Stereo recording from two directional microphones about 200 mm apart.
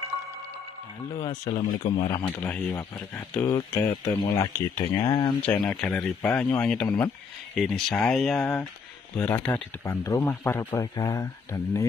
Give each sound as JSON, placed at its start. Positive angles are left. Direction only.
{"t": 1.1, "sound": "speech", "side_deg": 20}
{"t": 5.5, "sound": "speech", "side_deg": 5}